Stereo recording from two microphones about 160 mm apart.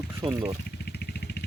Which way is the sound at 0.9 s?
90° left.